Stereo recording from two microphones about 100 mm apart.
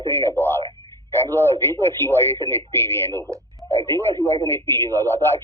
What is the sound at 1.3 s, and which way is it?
Speech, 20° left (ahead or behind).